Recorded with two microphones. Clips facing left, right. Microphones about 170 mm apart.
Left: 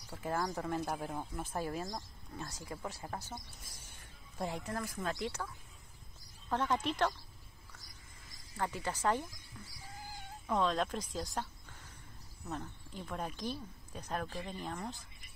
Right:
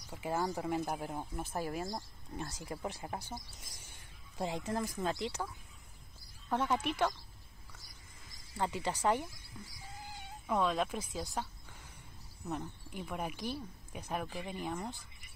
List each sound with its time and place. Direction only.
0.1 s speech: 15° right (ahead or behind)
4.4 s speech: 20° right (ahead or behind)
6.5 s speech: 10° right (ahead or behind)
8.5 s speech: 15° right (ahead or behind)
10.4 s speech: 10° right (ahead or behind)
12.4 s speech: 10° right (ahead or behind)